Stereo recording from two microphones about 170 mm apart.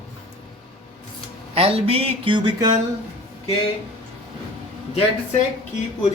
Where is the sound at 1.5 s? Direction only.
35° right (ahead or behind).